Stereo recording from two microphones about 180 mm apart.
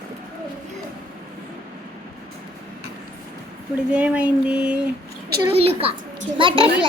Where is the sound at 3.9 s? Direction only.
5° right (ahead or behind).